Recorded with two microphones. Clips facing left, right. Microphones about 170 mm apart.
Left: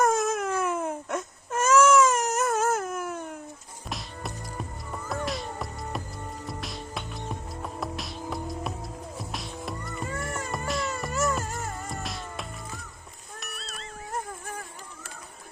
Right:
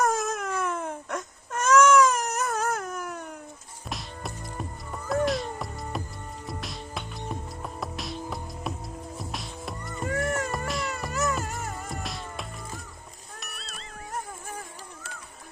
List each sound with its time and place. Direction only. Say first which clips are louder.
0.0 s baby cry: left 2 dB; centre (ahead or behind)
3.8 s music: even; centre (ahead or behind)
10.1 s music: right 9 dB; 65° right (ahead or behind)
10.5 s cat: left 1 dB; centre (ahead or behind)
13.4 s music: left 4 dB; centre (ahead or behind)